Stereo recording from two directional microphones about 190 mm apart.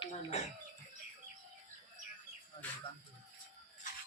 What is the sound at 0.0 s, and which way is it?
Bird, 35° left (ahead or behind).